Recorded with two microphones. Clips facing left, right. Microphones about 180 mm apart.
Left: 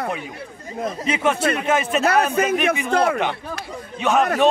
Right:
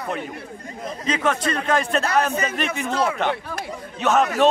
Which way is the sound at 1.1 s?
10° left (ahead or behind).